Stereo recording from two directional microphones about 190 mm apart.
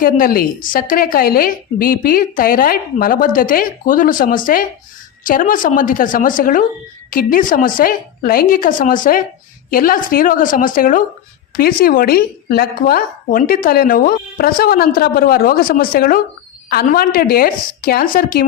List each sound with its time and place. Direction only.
0.0 s a woman's voice: 50° left (ahead or behind)